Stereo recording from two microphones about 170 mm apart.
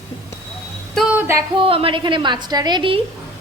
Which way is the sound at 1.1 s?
15° right (ahead or behind).